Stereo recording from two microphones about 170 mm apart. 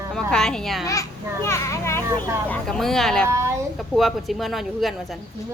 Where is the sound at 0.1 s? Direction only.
5° left (ahead or behind).